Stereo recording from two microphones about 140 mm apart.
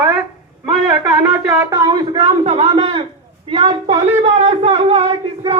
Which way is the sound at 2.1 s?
45° right (ahead or behind).